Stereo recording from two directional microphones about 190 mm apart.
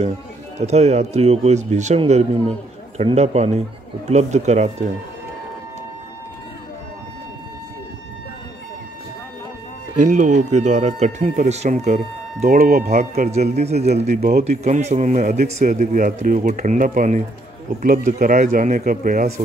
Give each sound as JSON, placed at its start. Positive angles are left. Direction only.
{"t": 0.6, "sound": "a man's voice", "side_deg": -35}
{"t": 10.0, "sound": "a man's voice", "side_deg": -40}
{"t": 12.4, "sound": "speech", "side_deg": -50}
{"t": 13.1, "sound": "a man's voice", "side_deg": -35}
{"t": 14.1, "sound": "speech", "side_deg": -55}
{"t": 14.4, "sound": "a man's voice", "side_deg": -35}